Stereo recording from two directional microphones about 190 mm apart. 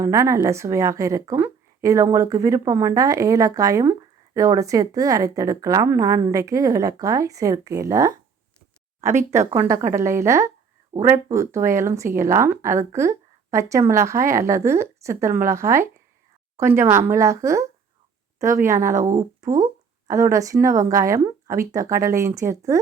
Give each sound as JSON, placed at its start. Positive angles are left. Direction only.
{"t": 0.0, "sound": "speech", "side_deg": -15}